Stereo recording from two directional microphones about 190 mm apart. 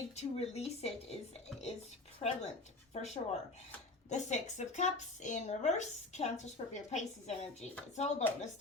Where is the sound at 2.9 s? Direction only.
35° left (ahead or behind).